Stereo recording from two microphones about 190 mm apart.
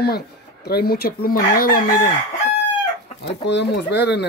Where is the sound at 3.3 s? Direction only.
65° left (ahead or behind).